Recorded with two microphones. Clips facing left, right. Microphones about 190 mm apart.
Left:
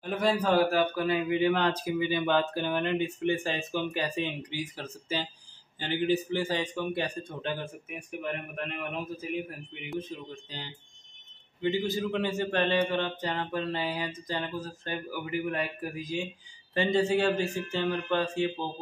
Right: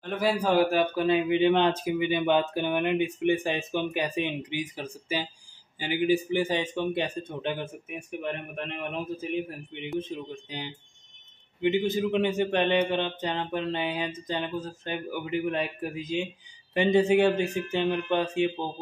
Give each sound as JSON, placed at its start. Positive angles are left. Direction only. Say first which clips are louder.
{"t": 0.0, "sound": "a man's voice", "louder": "right 1 dB", "side_deg": 0}